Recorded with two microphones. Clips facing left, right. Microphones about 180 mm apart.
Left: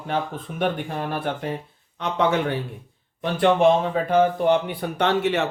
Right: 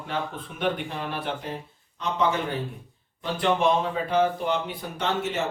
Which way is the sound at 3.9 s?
50° left (ahead or behind).